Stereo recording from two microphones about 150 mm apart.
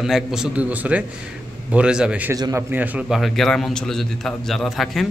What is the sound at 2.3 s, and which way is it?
Speech, 25° right (ahead or behind).